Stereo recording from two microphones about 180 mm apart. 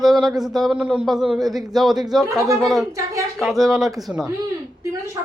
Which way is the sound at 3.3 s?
Centre (ahead or behind).